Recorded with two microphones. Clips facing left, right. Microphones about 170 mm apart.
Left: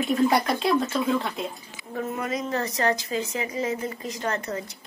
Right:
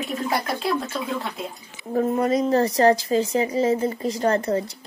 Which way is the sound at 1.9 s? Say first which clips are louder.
Right 8 dB; 35° right (ahead or behind).